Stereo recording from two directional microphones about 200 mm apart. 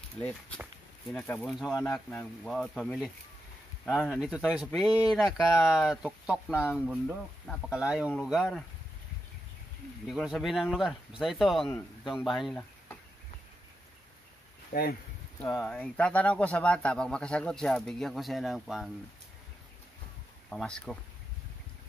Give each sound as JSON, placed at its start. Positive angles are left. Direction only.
{"t": 0.2, "sound": "speech", "side_deg": 10}
{"t": 1.5, "sound": "speech", "side_deg": 0}
{"t": 10.0, "sound": "speech", "side_deg": 0}
{"t": 14.7, "sound": "speech", "side_deg": 50}
{"t": 15.5, "sound": "speech", "side_deg": 5}
{"t": 20.4, "sound": "speech", "side_deg": 5}